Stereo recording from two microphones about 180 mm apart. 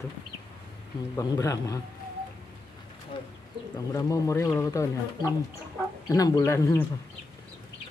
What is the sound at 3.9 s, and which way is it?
Speech, 20° left (ahead or behind).